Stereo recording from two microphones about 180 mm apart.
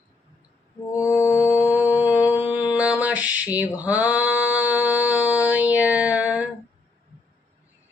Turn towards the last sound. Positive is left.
turn(degrees=-10)  # may be behind; listen again after turning